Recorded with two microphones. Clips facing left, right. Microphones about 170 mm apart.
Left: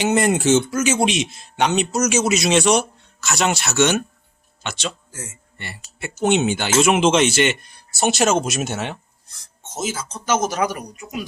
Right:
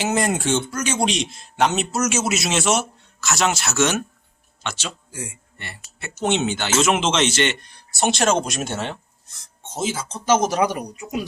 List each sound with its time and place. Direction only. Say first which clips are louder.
0.0 s a man's voice: left 4 dB; centre (ahead or behind)
5.1 s speech: right 2 dB; 15° right (ahead or behind)
6.0 s a man's voice: left 3 dB; 10° left (ahead or behind)
9.7 s speech: right 1 dB; 30° right (ahead or behind)